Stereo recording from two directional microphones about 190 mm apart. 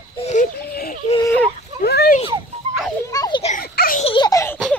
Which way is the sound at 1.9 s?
60° left (ahead or behind).